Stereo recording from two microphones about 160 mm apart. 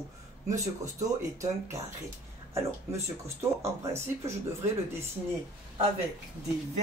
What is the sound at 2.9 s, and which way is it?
Speech, 20° right (ahead or behind).